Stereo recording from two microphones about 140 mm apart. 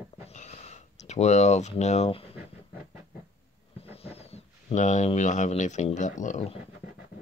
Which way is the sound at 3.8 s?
45° left (ahead or behind).